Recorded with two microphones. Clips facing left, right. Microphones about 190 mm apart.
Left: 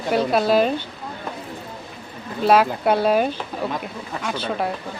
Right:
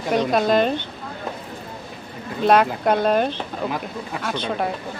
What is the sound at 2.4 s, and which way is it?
A woman's voice, 5° left (ahead or behind).